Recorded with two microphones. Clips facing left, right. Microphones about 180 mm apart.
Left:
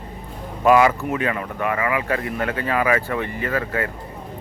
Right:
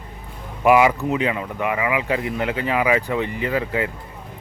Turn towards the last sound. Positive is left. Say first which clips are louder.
# right 1 dB
turn(degrees=-15)  # may be behind; listen again after turning